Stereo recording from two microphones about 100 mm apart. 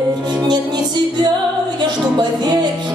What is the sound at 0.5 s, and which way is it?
Music, 50° right (ahead or behind).